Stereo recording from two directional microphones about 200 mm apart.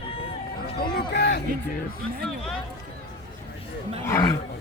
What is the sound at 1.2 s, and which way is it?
Music, 55° left (ahead or behind).